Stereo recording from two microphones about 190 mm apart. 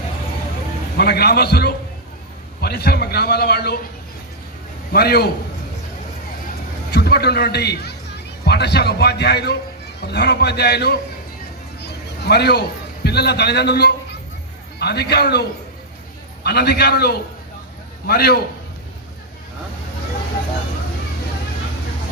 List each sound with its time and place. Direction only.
0.9 s a man's voice: 55° left (ahead or behind)
4.9 s a man's voice: 55° left (ahead or behind)
6.9 s a man's voice: 55° left (ahead or behind)
11.8 s a sound: 60° left (ahead or behind)
13.1 s a man's voice: 60° left (ahead or behind)